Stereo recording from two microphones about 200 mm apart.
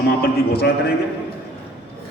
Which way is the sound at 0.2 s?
50° left (ahead or behind).